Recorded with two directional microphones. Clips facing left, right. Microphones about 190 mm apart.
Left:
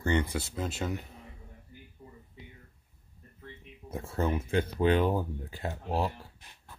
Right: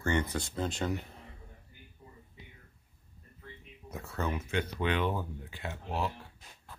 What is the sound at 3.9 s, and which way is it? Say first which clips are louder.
Speech: left 5 dB; 30° left (ahead or behind).